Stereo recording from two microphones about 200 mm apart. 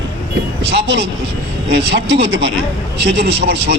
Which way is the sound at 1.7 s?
55° right (ahead or behind).